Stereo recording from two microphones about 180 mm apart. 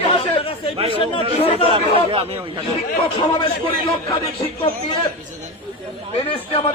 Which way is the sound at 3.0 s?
25° left (ahead or behind).